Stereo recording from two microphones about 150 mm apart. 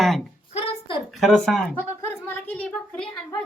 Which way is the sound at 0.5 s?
40° left (ahead or behind).